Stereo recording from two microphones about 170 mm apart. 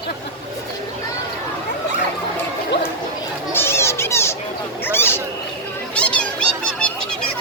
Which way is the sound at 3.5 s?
15° left (ahead or behind).